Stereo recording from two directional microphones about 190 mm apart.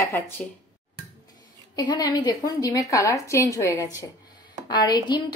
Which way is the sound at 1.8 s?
20° left (ahead or behind).